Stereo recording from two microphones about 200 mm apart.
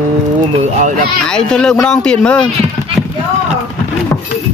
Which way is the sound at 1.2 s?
5° left (ahead or behind).